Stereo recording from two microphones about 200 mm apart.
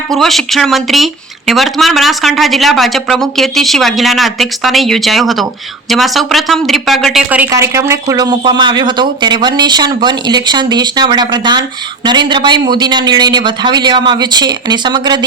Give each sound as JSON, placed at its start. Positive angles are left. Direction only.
{"t": 0.1, "sound": "a woman's voice", "side_deg": 0}